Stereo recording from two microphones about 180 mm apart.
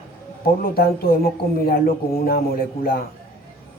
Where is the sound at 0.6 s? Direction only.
55° left (ahead or behind).